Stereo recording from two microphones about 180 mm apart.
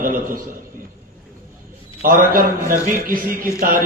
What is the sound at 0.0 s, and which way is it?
Speech, 50° right (ahead or behind).